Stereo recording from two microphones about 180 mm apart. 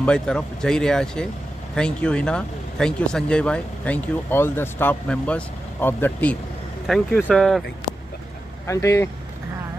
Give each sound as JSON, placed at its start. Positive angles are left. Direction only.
{"t": 0.0, "sound": "speech", "side_deg": 5}
{"t": 8.6, "sound": "speech", "side_deg": 15}